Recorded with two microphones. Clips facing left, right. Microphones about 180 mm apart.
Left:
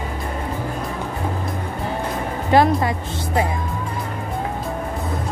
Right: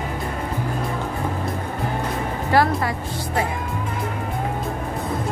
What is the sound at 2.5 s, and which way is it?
Speech, 20° left (ahead or behind).